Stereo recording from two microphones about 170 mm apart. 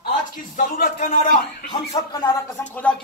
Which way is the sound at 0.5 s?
55° left (ahead or behind).